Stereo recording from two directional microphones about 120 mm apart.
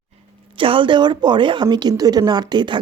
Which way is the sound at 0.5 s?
45° right (ahead or behind).